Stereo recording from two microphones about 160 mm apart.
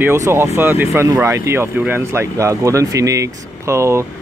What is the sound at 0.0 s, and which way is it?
Speech, 15° right (ahead or behind).